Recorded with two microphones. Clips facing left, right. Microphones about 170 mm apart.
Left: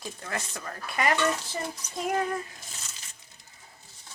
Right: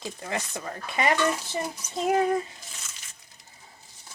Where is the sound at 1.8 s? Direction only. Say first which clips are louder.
Right 4 dB; 10° right (ahead or behind).